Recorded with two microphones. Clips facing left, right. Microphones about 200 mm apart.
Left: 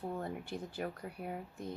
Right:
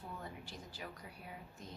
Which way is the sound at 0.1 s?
55° left (ahead or behind).